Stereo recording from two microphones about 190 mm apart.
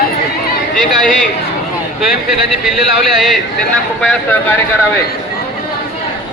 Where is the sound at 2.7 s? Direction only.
Centre (ahead or behind).